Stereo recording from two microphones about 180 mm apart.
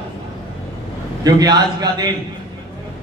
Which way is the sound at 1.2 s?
20° right (ahead or behind).